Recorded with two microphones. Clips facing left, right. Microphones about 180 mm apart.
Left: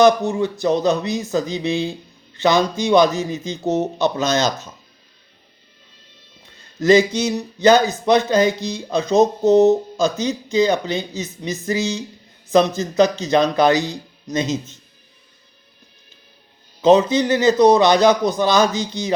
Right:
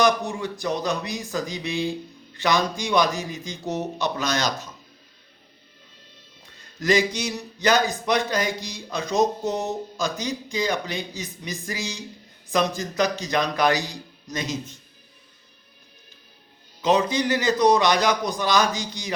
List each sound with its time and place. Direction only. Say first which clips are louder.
0.0 s speech: left 7 dB; 25° left (ahead or behind)
6.7 s speech: left 8 dB; 25° left (ahead or behind)
16.8 s speech: left 7 dB; 25° left (ahead or behind)